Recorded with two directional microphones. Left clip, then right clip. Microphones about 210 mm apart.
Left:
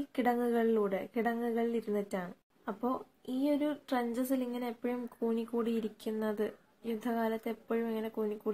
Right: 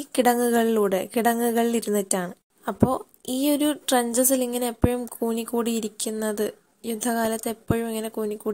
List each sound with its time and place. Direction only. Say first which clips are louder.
0.1 s a woman's voice: right 11 dB; 40° right (ahead or behind)